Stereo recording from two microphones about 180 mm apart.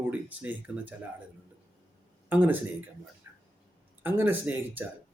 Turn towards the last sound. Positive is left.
turn(degrees=-10)  # may be behind; listen again after turning